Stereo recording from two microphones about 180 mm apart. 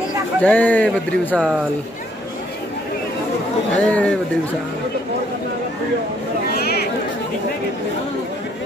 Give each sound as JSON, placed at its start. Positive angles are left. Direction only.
{"t": 0.4, "sound": "speech", "side_deg": 10}
{"t": 3.7, "sound": "speech", "side_deg": 10}
{"t": 6.5, "sound": "a sound", "side_deg": 60}